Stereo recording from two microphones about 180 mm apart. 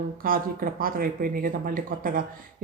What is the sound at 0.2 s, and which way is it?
A woman's voice, 55° right (ahead or behind).